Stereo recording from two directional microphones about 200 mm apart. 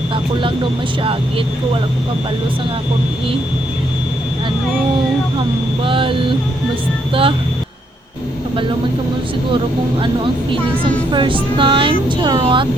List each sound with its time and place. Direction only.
5.8 s speech: 25° right (ahead or behind)
10.5 s speech: 25° right (ahead or behind)